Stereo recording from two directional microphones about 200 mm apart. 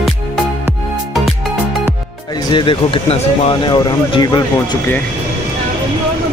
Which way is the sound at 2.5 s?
25° left (ahead or behind).